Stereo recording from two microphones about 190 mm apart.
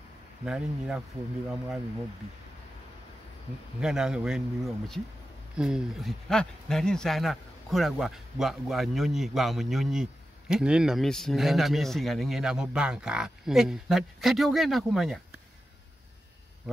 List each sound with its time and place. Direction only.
0.5 s speech: 5° right (ahead or behind)
3.8 s speech: 5° right (ahead or behind)
16.6 s speech: centre (ahead or behind)